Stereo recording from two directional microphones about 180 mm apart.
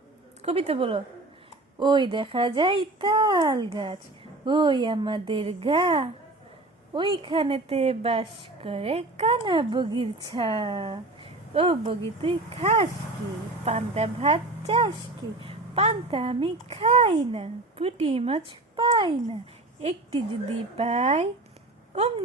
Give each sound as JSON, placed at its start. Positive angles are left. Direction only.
{"t": 0.4, "sound": "a woman's voice", "side_deg": -35}